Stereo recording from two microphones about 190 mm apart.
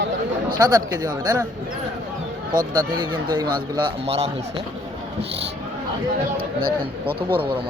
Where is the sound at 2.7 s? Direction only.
20° right (ahead or behind).